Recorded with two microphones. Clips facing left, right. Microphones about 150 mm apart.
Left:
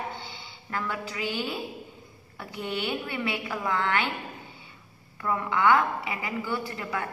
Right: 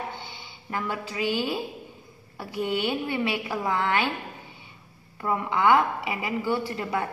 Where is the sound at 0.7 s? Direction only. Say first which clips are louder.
Right 2 dB; 20° right (ahead or behind).